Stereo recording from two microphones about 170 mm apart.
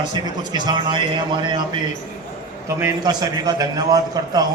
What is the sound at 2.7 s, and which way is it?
A man's voice, 15° right (ahead or behind).